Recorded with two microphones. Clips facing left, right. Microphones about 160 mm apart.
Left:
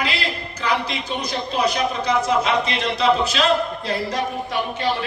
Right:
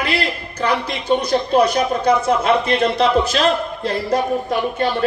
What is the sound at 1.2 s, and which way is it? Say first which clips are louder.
Speech: right 5 dB; 55° right (ahead or behind).